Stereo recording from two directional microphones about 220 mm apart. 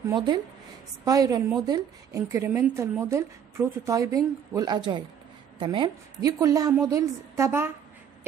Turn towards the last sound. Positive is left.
turn(degrees=-10)  # may be behind; listen again after turning